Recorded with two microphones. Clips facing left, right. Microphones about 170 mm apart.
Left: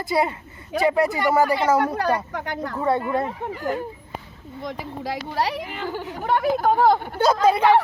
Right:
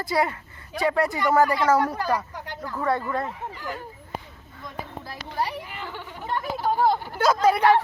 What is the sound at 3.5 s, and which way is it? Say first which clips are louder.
Speech: left 8 dB; 45° left (ahead or behind).